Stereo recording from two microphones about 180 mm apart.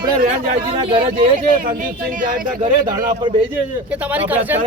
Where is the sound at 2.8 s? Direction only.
25° right (ahead or behind).